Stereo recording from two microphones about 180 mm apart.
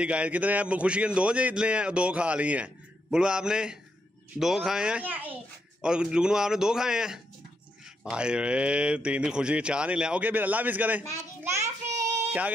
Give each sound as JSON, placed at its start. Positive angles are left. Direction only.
{"t": 0.0, "sound": "a man's voice", "side_deg": -5}
{"t": 11.6, "sound": "child singing", "side_deg": -40}